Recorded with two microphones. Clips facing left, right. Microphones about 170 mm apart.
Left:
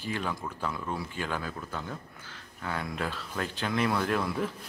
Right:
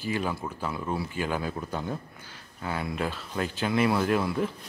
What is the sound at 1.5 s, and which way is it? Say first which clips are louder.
Speech: right 5 dB; 20° right (ahead or behind).